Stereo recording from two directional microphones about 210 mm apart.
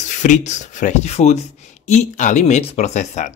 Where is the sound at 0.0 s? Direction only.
35° left (ahead or behind).